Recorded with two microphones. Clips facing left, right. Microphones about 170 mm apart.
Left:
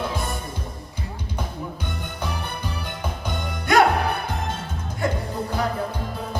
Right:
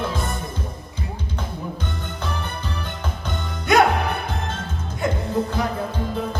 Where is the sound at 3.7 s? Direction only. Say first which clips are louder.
Right 1 dB; 20° right (ahead or behind).